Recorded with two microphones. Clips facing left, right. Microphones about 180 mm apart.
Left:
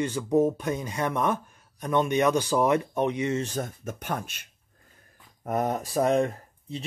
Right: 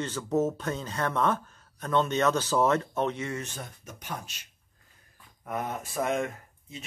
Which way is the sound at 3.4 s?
45° left (ahead or behind).